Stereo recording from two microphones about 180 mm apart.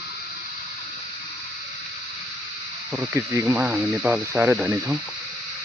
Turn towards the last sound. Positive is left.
turn(degrees=-15)  # may be behind; listen again after turning